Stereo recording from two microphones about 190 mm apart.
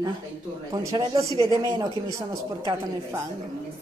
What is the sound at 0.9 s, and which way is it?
Speech, 20° right (ahead or behind).